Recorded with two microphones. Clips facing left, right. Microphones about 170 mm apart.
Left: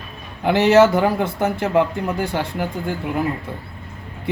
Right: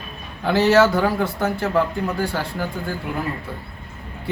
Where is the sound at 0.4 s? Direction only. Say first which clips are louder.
Left 2 dB; 20° left (ahead or behind).